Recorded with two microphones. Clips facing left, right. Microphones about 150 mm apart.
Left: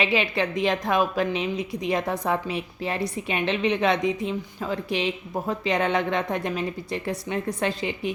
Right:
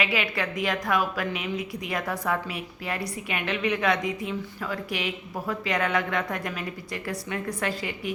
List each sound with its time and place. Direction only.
0.0 s a woman's voice: 25° left (ahead or behind)